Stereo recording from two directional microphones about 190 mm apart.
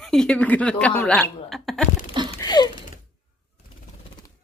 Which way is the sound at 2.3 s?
20° left (ahead or behind).